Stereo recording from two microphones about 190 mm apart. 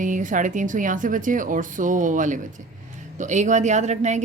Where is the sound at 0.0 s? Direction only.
45° right (ahead or behind).